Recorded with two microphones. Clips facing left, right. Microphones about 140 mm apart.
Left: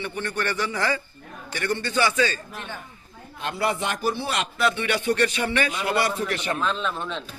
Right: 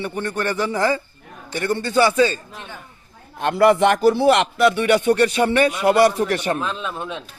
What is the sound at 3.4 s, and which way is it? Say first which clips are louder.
Speech: right 11 dB; 60° right (ahead or behind).